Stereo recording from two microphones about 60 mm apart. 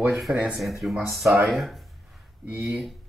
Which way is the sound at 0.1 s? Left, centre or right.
Centre.